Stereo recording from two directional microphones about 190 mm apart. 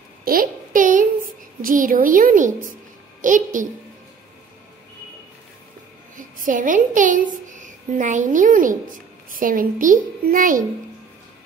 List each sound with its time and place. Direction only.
0.2 s a sound: 50° right (ahead or behind)
1.6 s a woman's voice: 45° right (ahead or behind)
6.1 s a woman's voice: 45° right (ahead or behind)